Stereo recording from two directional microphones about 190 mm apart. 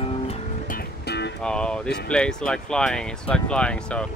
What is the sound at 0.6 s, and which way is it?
Music, 55° left (ahead or behind).